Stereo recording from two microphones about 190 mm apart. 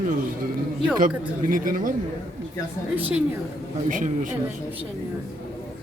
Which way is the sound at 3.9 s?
45° right (ahead or behind).